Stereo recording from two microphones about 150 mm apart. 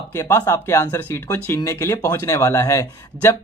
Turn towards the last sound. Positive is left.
turn(degrees=20)  # may be behind; listen again after turning